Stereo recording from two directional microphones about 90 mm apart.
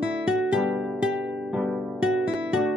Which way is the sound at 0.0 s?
5° right (ahead or behind).